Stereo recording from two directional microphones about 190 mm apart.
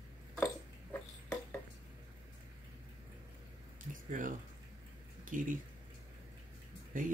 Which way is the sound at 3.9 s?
45° right (ahead or behind).